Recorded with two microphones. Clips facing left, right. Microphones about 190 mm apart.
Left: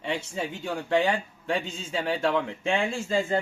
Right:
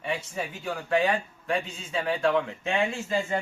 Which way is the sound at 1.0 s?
30° left (ahead or behind).